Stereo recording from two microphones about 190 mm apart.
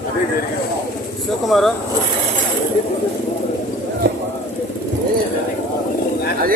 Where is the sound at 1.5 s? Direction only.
Centre (ahead or behind).